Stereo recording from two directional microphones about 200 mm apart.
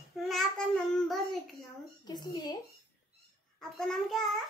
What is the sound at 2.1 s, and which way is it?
Speech, 20° left (ahead or behind).